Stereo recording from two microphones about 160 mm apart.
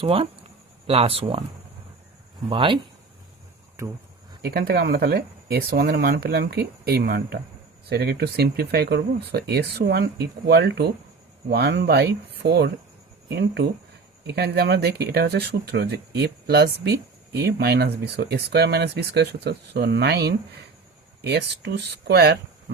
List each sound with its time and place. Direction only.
0.0 s speech: 35° right (ahead or behind)
2.5 s speech: 30° right (ahead or behind)
4.4 s speech: 80° right